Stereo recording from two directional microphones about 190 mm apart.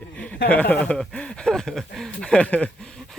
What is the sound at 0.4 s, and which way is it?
Speech, 10° left (ahead or behind).